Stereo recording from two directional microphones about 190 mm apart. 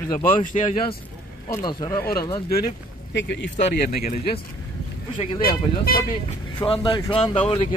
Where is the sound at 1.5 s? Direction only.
20° left (ahead or behind).